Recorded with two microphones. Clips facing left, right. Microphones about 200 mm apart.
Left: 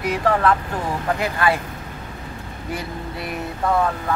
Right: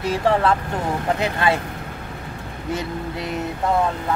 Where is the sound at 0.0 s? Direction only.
30° right (ahead or behind).